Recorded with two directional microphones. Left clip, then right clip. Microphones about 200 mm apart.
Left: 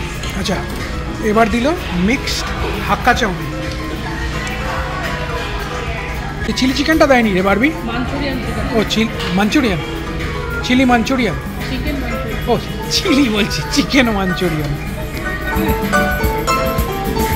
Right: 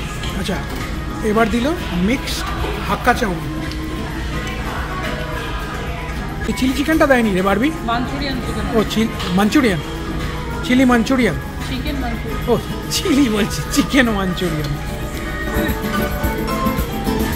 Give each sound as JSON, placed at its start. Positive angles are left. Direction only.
{"t": 1.2, "sound": "a woman's voice", "side_deg": -5}
{"t": 6.6, "sound": "a woman's voice", "side_deg": -5}
{"t": 8.7, "sound": "speech", "side_deg": -10}
{"t": 12.4, "sound": "speech", "side_deg": -10}